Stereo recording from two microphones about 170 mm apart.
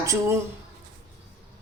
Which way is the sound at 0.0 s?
15° right (ahead or behind).